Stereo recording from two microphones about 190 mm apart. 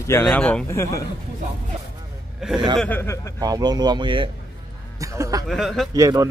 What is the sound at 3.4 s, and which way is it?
Speech, 20° right (ahead or behind).